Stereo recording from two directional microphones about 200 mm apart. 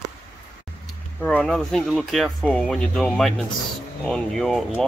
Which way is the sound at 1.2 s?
5° left (ahead or behind).